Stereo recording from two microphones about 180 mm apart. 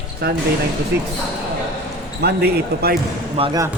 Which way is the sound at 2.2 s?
65° right (ahead or behind).